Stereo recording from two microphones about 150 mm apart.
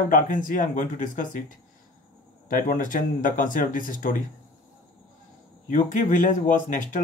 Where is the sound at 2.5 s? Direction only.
65° left (ahead or behind).